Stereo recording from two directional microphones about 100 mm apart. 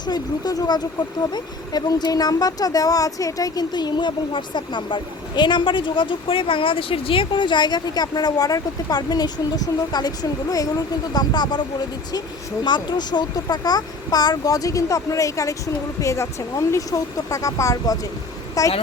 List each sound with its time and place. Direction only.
0.0 s speech: 45° left (ahead or behind)
12.6 s speech: 45° left (ahead or behind)